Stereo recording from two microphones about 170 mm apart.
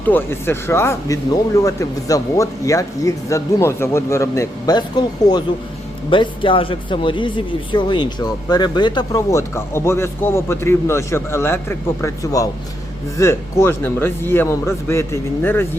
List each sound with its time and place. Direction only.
0.1 s speech: 15° left (ahead or behind)